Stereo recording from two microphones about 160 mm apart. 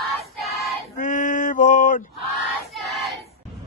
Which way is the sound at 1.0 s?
55° left (ahead or behind).